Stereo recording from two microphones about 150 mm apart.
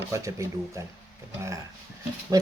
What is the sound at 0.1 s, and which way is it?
Speech, 20° right (ahead or behind).